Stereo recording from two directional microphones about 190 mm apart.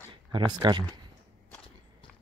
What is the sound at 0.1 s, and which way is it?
Speech, 25° right (ahead or behind).